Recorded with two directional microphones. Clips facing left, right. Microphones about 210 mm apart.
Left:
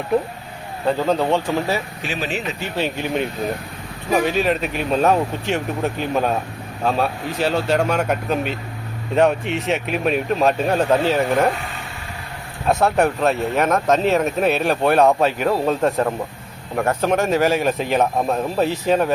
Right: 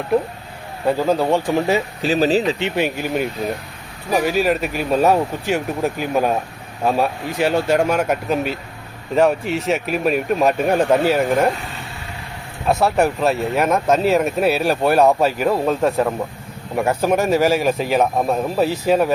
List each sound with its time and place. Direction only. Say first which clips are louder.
0.9 s a man's voice: right 1 dB; 10° right (ahead or behind)
2.0 s speech: right 9 dB; 40° right (ahead or behind)
2.7 s a man's voice: right 2 dB; 10° right (ahead or behind)
12.6 s a man's voice: even; 5° right (ahead or behind)